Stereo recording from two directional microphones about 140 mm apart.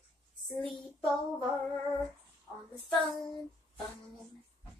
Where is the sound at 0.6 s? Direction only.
Centre (ahead or behind).